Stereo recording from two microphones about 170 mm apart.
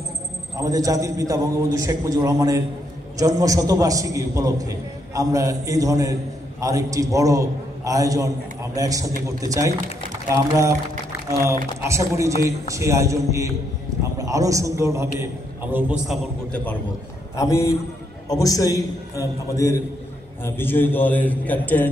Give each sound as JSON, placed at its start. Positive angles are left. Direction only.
{"t": 0.6, "sound": "a man's voice", "side_deg": -20}
{"t": 11.8, "sound": "a man's voice", "side_deg": -15}
{"t": 17.4, "sound": "a man's voice", "side_deg": 20}